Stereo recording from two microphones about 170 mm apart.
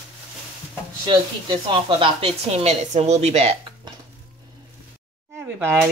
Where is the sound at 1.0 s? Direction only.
25° right (ahead or behind).